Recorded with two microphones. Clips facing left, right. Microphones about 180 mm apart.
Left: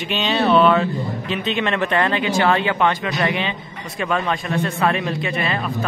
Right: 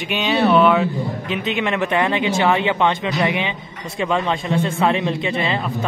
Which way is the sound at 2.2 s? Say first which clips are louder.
Even; 25° right (ahead or behind).